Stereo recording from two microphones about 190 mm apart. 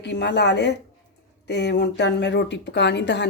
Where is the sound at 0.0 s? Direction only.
65° left (ahead or behind).